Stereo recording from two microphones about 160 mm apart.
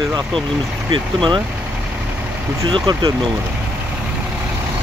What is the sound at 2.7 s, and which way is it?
Speech, 25° right (ahead or behind).